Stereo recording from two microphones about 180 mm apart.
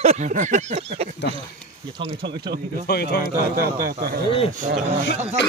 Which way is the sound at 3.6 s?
55° right (ahead or behind).